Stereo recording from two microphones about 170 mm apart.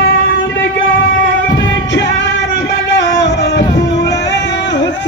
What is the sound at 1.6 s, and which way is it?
Music, 90° left.